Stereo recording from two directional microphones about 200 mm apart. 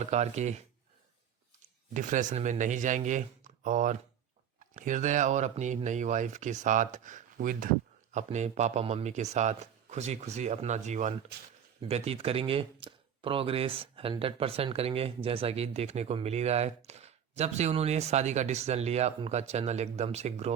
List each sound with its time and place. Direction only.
0.0 s speech: 35° right (ahead or behind)
1.9 s speech: 40° right (ahead or behind)